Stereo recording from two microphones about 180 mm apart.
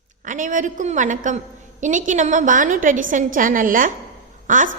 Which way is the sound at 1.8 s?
45° right (ahead or behind).